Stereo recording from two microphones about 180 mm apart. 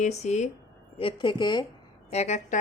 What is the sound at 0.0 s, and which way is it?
Speech, 40° left (ahead or behind).